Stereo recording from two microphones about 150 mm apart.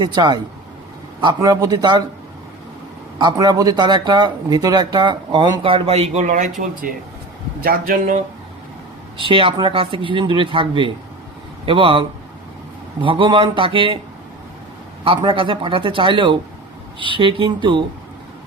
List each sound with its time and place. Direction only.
0.0 s speech: 30° right (ahead or behind)
3.2 s speech: 25° right (ahead or behind); by 6.5 s 55° right (ahead or behind)
7.6 s speech: 75° right (ahead or behind)
9.1 s speech: 35° right (ahead or behind)
15.0 s speech: 35° right (ahead or behind)